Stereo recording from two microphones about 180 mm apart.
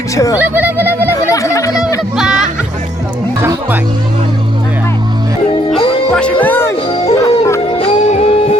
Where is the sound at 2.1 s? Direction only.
5° right (ahead or behind).